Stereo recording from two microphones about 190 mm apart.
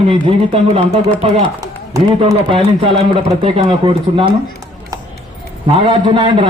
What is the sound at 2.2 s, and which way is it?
Speech, 30° right (ahead or behind).